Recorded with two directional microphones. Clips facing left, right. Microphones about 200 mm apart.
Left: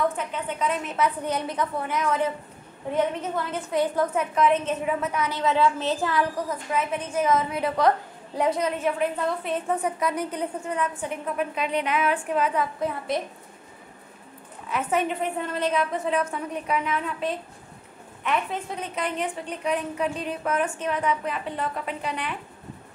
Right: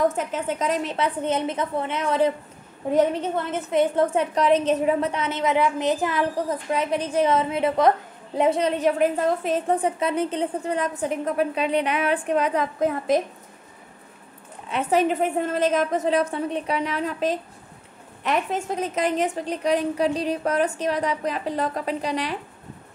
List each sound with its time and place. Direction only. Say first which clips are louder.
0.0 s a woman's voice: right 4 dB; 40° right (ahead or behind); by 6.2 s 20° right (ahead or behind)
6.5 s a woman's voice: right 3 dB; 35° right (ahead or behind)
14.7 s a woman's voice: right 4 dB; 30° right (ahead or behind)